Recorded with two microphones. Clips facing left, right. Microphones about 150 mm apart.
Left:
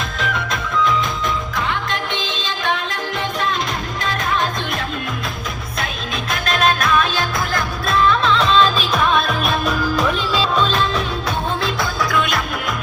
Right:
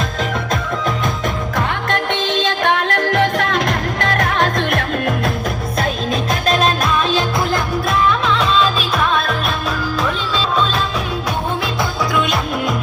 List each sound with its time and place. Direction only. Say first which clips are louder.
0.9 s music: even; 50° right (ahead or behind)
2.4 s music: right 5 dB; 65° right (ahead or behind)
7.5 s music: right 2 dB; 20° right (ahead or behind)